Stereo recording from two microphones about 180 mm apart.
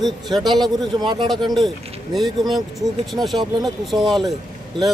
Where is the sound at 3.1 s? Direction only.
Centre (ahead or behind).